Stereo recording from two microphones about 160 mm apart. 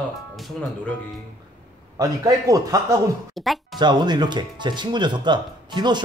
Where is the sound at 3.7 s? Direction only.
25° right (ahead or behind).